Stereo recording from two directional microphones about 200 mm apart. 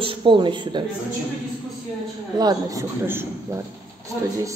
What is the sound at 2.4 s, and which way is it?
A man's voice, 15° right (ahead or behind).